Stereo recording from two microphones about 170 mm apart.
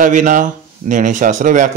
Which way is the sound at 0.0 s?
50° right (ahead or behind).